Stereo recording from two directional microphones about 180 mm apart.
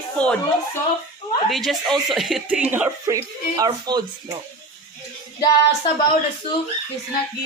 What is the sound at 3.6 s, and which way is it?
Speech, 20° right (ahead or behind).